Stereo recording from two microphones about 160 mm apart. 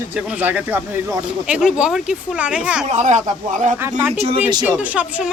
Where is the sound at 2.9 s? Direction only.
50° right (ahead or behind).